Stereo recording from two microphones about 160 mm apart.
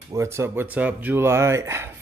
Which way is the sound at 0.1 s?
15° right (ahead or behind).